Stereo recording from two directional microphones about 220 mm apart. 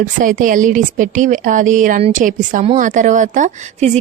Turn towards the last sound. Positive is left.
turn(degrees=-30)  # may be behind; listen again after turning